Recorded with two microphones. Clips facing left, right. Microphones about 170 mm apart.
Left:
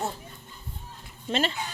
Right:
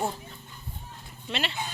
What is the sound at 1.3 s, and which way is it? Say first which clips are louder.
Speech: left 6 dB; 45° left (ahead or behind).